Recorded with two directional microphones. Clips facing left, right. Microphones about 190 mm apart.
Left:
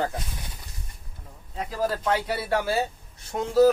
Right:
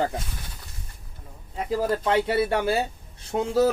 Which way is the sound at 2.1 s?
25° right (ahead or behind).